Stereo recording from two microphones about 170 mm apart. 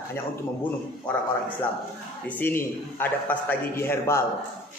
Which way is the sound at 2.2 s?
10° left (ahead or behind).